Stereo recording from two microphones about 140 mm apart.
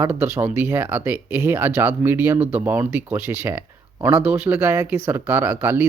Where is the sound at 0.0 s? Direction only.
20° right (ahead or behind).